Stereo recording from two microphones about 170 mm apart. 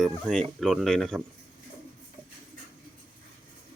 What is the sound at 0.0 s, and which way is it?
Speech, 5° left (ahead or behind).